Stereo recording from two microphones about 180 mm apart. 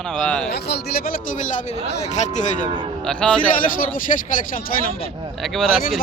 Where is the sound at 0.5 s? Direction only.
65° left (ahead or behind); by 2.6 s 45° left (ahead or behind).